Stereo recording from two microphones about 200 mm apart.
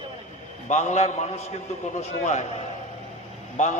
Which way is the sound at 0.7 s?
35° left (ahead or behind).